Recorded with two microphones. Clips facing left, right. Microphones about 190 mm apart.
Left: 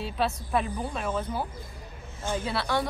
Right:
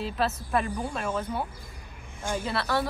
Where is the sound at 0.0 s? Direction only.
Centre (ahead or behind).